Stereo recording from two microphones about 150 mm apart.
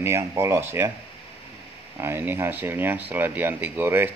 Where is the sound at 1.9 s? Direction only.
15° right (ahead or behind).